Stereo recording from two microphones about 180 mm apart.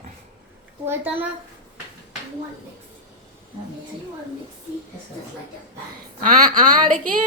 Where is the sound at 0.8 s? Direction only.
10° right (ahead or behind).